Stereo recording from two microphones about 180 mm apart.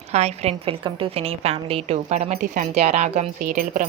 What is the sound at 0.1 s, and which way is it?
A woman's voice, 35° right (ahead or behind).